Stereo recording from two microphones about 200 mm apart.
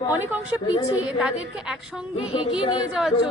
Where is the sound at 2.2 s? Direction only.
25° left (ahead or behind).